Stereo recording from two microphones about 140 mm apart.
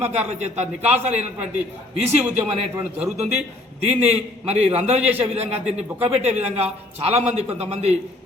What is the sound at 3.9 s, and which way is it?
A man's voice, 50° right (ahead or behind).